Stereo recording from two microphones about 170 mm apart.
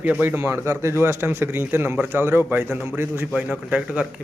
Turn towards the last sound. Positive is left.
turn(degrees=-5)  # may be behind; listen again after turning